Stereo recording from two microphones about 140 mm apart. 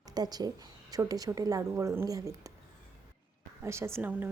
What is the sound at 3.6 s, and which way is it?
Speech, 20° right (ahead or behind).